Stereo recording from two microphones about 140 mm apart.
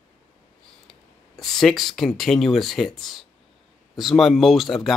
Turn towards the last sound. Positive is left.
turn(degrees=0)  # may be behind; listen again after turning